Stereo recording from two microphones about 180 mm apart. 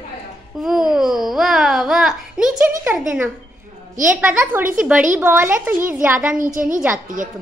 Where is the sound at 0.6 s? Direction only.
Centre (ahead or behind).